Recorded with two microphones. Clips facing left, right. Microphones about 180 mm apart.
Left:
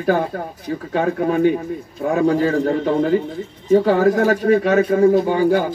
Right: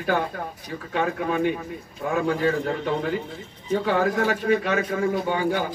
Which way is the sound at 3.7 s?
40° left (ahead or behind).